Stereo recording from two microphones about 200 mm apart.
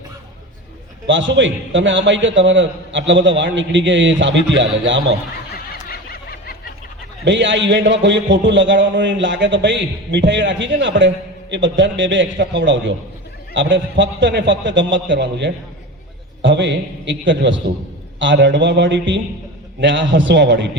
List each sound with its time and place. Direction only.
1.0 s a man's voice: 65° right (ahead or behind)
5.5 s a sound: 50° left (ahead or behind)
7.3 s a man's voice: 65° right (ahead or behind)